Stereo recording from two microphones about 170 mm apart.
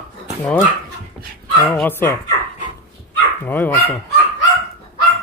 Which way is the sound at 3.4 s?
10° left (ahead or behind).